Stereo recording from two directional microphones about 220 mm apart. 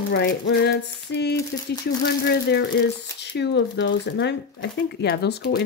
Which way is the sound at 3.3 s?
50° left (ahead or behind).